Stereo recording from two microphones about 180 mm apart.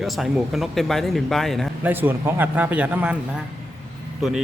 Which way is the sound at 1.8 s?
10° right (ahead or behind).